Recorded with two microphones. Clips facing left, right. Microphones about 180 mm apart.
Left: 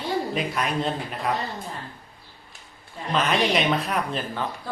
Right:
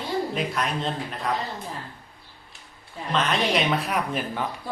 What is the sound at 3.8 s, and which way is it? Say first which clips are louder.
Speech: even; 10° right (ahead or behind).